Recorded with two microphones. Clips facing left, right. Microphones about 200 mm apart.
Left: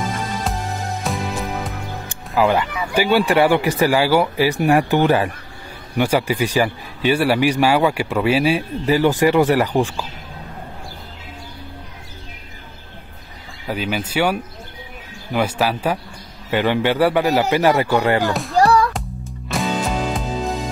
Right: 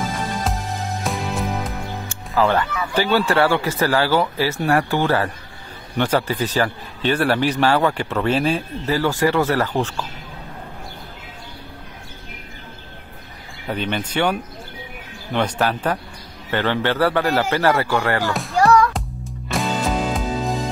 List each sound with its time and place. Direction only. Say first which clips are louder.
1.0 s music: right 1 dB; centre (ahead or behind)
2.0 s a man's voice: left 2 dB; 15° left (ahead or behind)
13.7 s a man's voice: left 1 dB; 5° left (ahead or behind)
18.3 s speech: left 3 dB; centre (ahead or behind)
18.6 s music: even; 35° left (ahead or behind)
18.9 s music: even; centre (ahead or behind)